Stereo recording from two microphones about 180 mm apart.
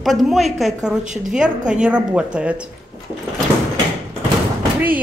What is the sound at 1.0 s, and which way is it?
Speech, 45° right (ahead or behind).